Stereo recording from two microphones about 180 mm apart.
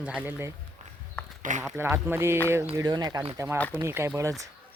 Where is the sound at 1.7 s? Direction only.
10° right (ahead or behind).